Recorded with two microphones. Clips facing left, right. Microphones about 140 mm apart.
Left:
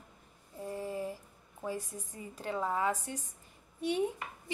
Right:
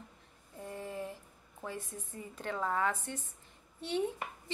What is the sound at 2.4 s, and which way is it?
A woman's voice, 10° left (ahead or behind).